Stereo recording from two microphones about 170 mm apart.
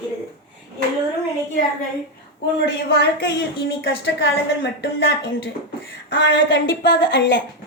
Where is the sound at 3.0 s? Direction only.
80° left.